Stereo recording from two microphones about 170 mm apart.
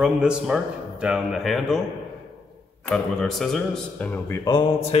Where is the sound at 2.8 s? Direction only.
5° left (ahead or behind).